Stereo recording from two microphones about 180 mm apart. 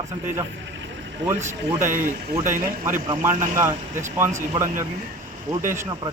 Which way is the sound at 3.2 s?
15° right (ahead or behind).